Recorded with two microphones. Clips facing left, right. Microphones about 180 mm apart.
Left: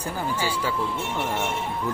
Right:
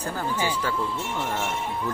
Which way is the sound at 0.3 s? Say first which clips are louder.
Right 1 dB; 10° left (ahead or behind).